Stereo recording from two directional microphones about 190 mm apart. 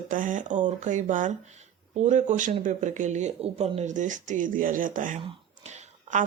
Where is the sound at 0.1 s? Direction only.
45° right (ahead or behind).